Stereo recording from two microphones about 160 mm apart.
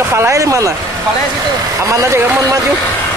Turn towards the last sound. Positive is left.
turn(degrees=-15)  # may be behind; listen again after turning